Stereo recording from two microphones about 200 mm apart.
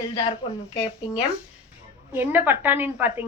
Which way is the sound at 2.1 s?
10° right (ahead or behind).